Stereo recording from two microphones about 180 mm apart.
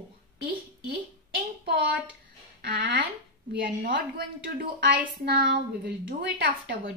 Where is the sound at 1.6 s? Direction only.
60° right (ahead or behind).